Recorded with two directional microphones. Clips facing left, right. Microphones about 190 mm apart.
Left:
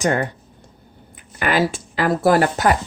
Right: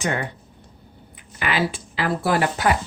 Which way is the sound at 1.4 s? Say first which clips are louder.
Left 4 dB; 45° left (ahead or behind).